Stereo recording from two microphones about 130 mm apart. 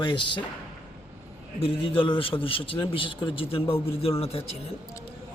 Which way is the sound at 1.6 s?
45° left (ahead or behind).